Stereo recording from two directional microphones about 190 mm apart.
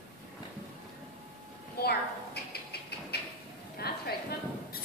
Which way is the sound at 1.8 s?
55° left (ahead or behind).